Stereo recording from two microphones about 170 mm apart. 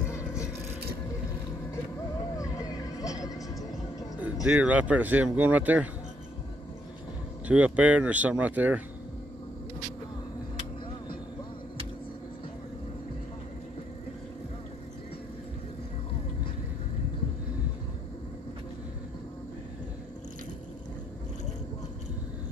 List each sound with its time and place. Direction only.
0.1 s vehicle: 15° left (ahead or behind)
2.3 s music: 20° left (ahead or behind)
4.2 s speech: 5° right (ahead or behind)
7.4 s speech: 10° right (ahead or behind)